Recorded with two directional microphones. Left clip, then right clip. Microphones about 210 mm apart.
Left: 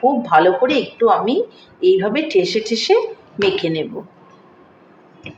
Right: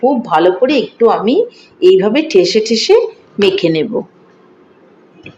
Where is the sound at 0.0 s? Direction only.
30° right (ahead or behind).